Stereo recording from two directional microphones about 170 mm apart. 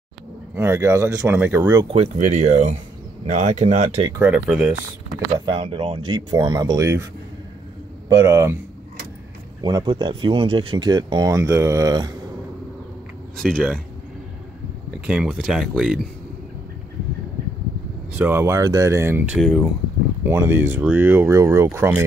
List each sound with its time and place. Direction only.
0.6 s speech: 15° right (ahead or behind)
1.9 s speech: 40° right (ahead or behind)
4.2 s speech: 5° right (ahead or behind)
5.2 s speech: 25° right (ahead or behind)
8.1 s speech: 20° right (ahead or behind)
9.6 s speech: 25° right (ahead or behind)
13.4 s speech: centre (ahead or behind)
15.0 s speech: 5° right (ahead or behind)
18.1 s speech: 10° right (ahead or behind)
19.4 s speech: centre (ahead or behind)
20.2 s speech: 15° right (ahead or behind)